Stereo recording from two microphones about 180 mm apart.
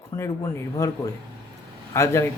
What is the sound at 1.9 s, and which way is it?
Speech, 15° left (ahead or behind).